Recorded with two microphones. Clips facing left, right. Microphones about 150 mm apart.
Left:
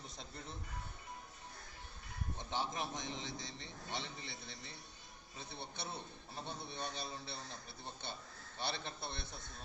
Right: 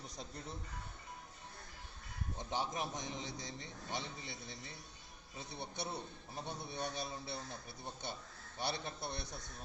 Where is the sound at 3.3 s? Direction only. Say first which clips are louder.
Right 1 dB; 40° right (ahead or behind).